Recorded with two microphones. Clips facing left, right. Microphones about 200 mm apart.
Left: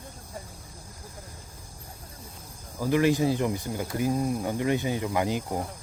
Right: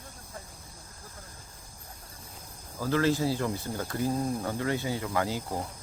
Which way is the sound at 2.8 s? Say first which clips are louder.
Left 3 dB; 15° left (ahead or behind).